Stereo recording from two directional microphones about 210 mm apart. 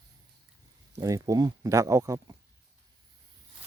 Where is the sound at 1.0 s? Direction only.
15° right (ahead or behind).